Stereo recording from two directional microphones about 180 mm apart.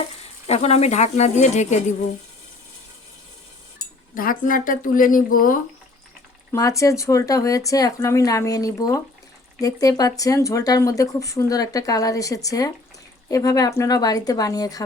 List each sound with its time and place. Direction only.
0.4 s speech: 35° left (ahead or behind)
4.1 s speech: 50° left (ahead or behind)
6.5 s speech: 15° left (ahead or behind)